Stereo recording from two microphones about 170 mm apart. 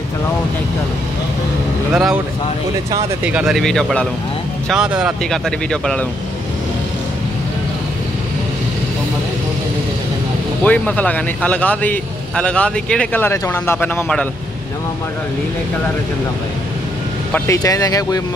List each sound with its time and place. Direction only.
3.3 s speech: 5° right (ahead or behind)
10.6 s speech: 10° left (ahead or behind)
17.3 s speech: 20° left (ahead or behind)